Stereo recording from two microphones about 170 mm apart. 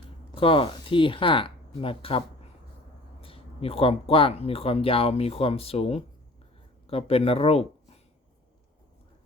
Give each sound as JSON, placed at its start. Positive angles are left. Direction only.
{"t": 0.3, "sound": "speech", "side_deg": 30}